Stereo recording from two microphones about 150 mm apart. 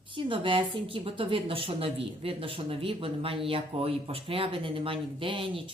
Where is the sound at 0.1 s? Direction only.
35° right (ahead or behind).